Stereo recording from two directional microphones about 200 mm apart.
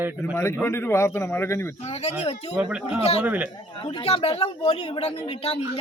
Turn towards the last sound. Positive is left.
turn(degrees=30)  # may be behind; listen again after turning